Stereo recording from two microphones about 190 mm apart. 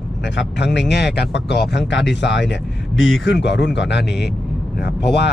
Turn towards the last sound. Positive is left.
turn(degrees=60)  # may be behind; listen again after turning